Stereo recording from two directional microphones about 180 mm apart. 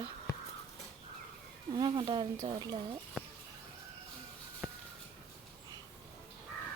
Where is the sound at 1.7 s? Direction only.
25° right (ahead or behind).